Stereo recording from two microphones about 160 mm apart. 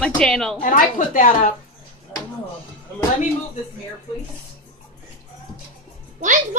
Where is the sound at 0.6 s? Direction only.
55° left (ahead or behind).